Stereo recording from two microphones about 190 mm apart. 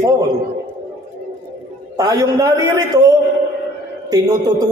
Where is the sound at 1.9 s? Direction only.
20° right (ahead or behind).